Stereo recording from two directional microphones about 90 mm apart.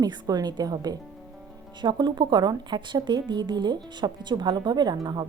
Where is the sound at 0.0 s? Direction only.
50° right (ahead or behind).